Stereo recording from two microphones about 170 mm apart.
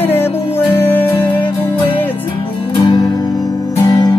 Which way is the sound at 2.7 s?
30° left (ahead or behind).